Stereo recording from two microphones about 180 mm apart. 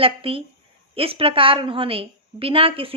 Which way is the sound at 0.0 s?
30° right (ahead or behind).